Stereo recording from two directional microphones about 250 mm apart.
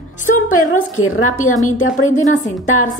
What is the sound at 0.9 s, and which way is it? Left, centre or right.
Speech, left.